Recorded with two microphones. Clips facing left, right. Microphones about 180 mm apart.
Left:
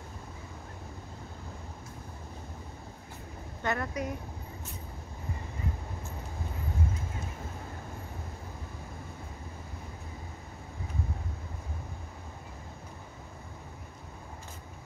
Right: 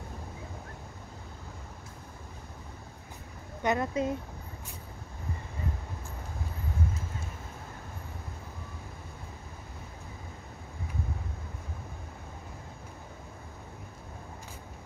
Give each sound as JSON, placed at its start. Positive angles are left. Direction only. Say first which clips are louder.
{"t": 3.6, "sound": "speech", "louder": "right 4 dB", "side_deg": -20}